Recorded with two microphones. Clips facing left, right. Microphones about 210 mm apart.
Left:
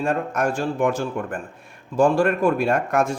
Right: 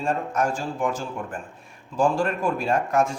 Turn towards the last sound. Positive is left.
turn(degrees=65)  # may be behind; listen again after turning